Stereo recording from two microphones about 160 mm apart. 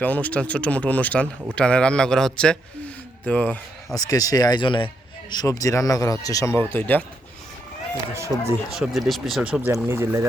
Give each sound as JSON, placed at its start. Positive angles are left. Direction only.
{"t": 0.0, "sound": "speech", "side_deg": 10}
{"t": 3.9, "sound": "speech", "side_deg": 20}
{"t": 7.9, "sound": "speech", "side_deg": -20}
{"t": 8.7, "sound": "speech", "side_deg": 0}